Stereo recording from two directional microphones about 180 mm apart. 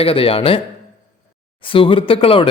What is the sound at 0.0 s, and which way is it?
Speech, 30° left (ahead or behind).